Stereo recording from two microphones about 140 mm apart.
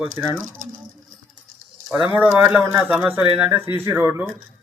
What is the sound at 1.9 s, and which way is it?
A man's voice, 10° right (ahead or behind).